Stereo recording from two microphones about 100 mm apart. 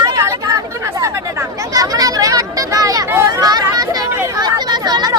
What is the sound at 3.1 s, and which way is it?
Chatter, 30° right (ahead or behind).